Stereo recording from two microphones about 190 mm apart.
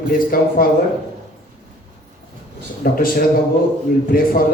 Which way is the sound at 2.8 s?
50° left (ahead or behind).